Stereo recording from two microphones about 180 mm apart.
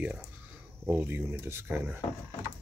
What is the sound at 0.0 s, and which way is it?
Speech, 5° right (ahead or behind).